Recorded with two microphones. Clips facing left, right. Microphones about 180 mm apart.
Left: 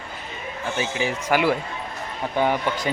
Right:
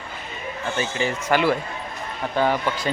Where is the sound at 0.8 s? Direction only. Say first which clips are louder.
Even; 10° left (ahead or behind).